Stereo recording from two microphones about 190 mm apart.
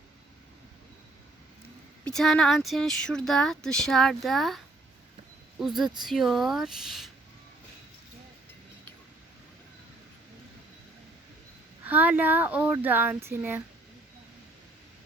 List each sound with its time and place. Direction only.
2.0 s speech: 5° left (ahead or behind)
11.9 s speech: 10° right (ahead or behind)